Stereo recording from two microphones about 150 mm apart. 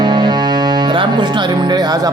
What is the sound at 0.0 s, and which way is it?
Speech, 30° right (ahead or behind).